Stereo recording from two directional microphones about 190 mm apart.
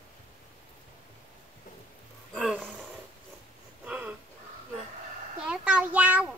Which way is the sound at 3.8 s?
5° right (ahead or behind).